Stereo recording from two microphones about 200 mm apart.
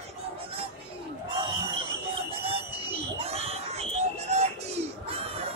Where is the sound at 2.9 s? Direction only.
30° right (ahead or behind).